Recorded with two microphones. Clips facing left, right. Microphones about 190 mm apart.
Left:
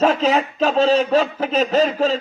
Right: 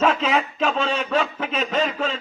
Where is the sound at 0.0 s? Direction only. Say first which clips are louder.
Left 4 dB; 35° left (ahead or behind).